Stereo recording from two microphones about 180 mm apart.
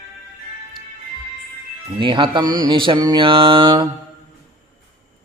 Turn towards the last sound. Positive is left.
turn(degrees=-25)  # may be behind; listen again after turning